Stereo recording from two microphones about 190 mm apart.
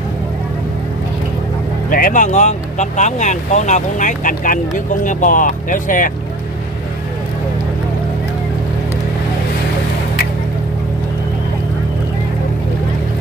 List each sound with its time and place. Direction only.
1.9 s speech: 45° left (ahead or behind)